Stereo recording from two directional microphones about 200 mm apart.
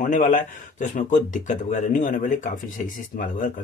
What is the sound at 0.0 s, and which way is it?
Speech, 40° left (ahead or behind).